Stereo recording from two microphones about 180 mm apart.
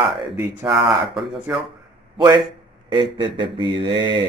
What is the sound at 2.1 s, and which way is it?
A man's voice, 25° right (ahead or behind).